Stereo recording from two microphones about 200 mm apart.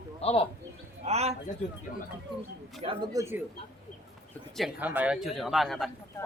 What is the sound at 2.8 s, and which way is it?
Speech, 25° right (ahead or behind).